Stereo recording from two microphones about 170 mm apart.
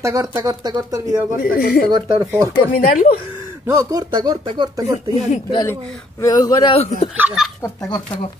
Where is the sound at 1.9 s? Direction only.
20° right (ahead or behind).